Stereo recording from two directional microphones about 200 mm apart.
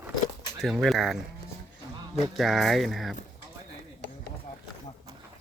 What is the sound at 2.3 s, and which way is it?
Speech, centre (ahead or behind).